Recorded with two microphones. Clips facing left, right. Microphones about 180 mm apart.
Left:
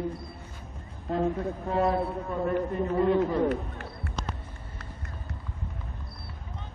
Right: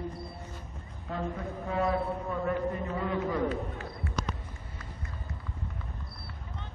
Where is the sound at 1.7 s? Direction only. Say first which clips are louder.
Left 3 dB; 35° left (ahead or behind).